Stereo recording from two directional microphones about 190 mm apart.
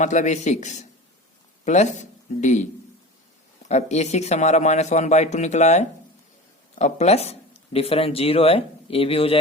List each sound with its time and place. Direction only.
0.0 s speech: 40° left (ahead or behind)
3.7 s speech: 35° left (ahead or behind)